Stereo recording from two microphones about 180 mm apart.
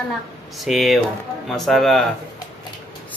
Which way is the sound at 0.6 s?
Centre (ahead or behind).